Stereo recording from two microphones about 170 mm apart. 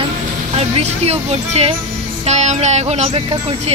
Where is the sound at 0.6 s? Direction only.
35° right (ahead or behind).